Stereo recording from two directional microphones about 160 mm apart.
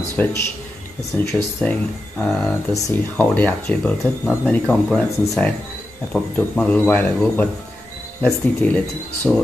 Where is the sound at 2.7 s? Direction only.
15° left (ahead or behind).